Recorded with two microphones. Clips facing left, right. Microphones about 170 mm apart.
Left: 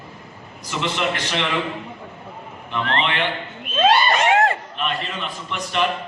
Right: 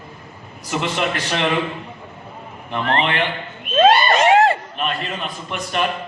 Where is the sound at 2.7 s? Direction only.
45° right (ahead or behind).